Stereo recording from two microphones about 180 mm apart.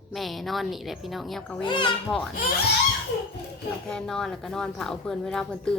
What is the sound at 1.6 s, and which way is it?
Speech, 25° left (ahead or behind).